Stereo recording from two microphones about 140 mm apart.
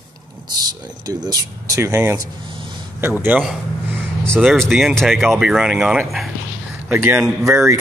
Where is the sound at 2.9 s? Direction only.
15° right (ahead or behind).